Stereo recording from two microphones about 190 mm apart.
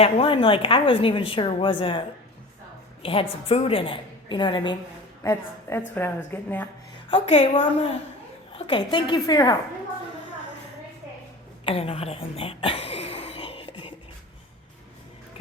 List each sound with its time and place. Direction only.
0.0 s a woman's voice: 30° left (ahead or behind); by 6.7 s 10° left (ahead or behind)
7.1 s a woman's voice: 30° left (ahead or behind)
11.6 s a sound: 30° left (ahead or behind)